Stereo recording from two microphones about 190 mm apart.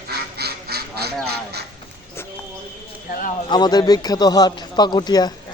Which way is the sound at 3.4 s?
20° left (ahead or behind).